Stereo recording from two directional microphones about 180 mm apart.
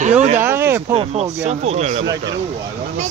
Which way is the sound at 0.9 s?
35° right (ahead or behind).